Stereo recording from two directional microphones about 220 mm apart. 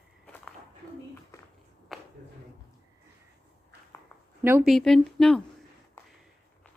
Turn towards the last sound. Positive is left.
turn(degrees=0)  # may be behind; listen again after turning